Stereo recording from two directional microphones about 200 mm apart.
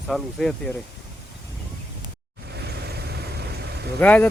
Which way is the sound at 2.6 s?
55° right (ahead or behind).